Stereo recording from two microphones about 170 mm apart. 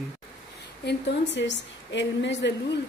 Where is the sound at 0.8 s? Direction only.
90° left.